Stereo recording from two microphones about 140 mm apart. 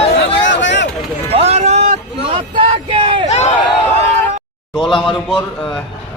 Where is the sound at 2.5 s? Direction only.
40° right (ahead or behind).